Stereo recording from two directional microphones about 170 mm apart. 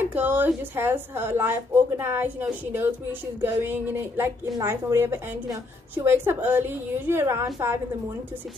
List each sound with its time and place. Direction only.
0.1 s a woman's voice: 10° right (ahead or behind)